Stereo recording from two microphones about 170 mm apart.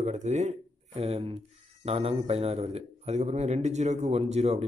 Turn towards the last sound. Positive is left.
turn(degrees=-40)  # may be behind; listen again after turning